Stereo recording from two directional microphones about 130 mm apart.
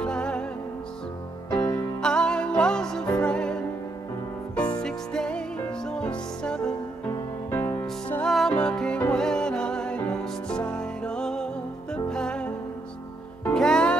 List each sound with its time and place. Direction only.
0.0 s music: 5° left (ahead or behind)
1.5 s music: 25° left (ahead or behind)
2.0 s music: 5° left (ahead or behind)
4.7 s music: 5° left (ahead or behind)
7.1 s music: 20° left (ahead or behind)
8.3 s music: 5° left (ahead or behind)